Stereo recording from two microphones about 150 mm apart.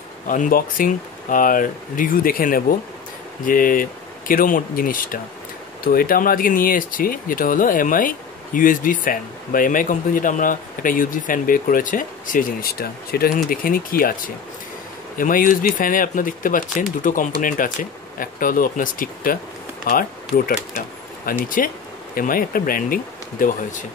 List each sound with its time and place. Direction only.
0.3 s speech: 65° left (ahead or behind)